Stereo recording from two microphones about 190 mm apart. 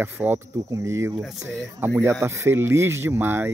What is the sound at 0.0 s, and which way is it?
Speech, 10° right (ahead or behind).